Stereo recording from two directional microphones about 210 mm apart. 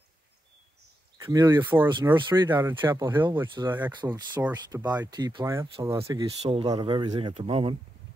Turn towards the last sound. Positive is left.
turn(degrees=-25)  # may be behind; listen again after turning